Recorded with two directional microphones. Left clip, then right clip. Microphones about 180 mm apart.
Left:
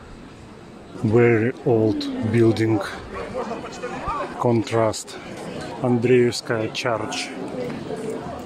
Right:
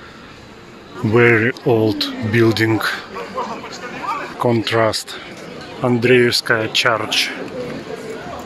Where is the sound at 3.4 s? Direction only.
60° left (ahead or behind).